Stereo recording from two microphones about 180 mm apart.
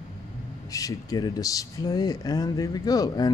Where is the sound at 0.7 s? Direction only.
20° left (ahead or behind).